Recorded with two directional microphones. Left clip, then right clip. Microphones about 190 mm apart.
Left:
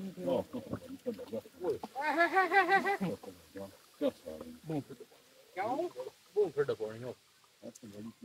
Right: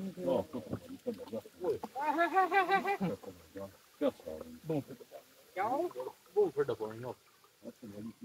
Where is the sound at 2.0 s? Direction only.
45° left (ahead or behind).